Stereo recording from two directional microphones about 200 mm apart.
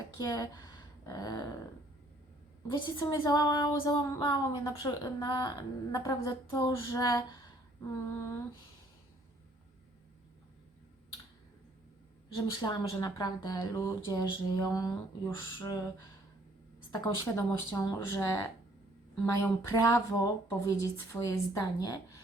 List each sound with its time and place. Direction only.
0.2 s speech: 20° left (ahead or behind)
2.6 s speech: 25° left (ahead or behind)
12.5 s speech: 20° left (ahead or behind)